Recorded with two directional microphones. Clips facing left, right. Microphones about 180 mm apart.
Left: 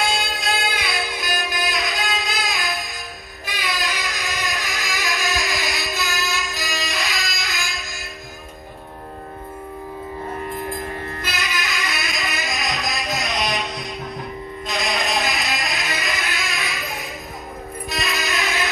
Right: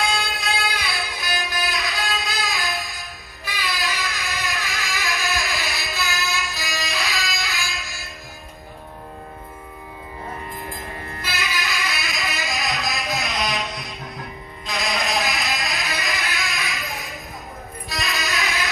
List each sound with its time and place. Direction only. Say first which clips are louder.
0.0 s music: left 1 dB; 20° left (ahead or behind)
2.2 s a sound: left 1 dB; 20° left (ahead or behind)
6.9 s music: even; 15° left (ahead or behind)
11.3 s music: right 2 dB; centre (ahead or behind)
14.7 s music: left 1 dB; centre (ahead or behind)